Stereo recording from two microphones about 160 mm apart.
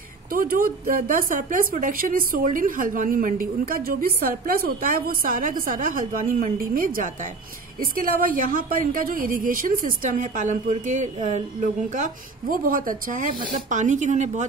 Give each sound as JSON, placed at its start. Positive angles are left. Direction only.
{"t": 0.3, "sound": "a woman's voice", "side_deg": -65}